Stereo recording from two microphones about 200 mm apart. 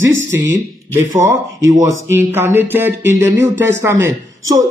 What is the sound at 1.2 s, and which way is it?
Speech, 15° right (ahead or behind).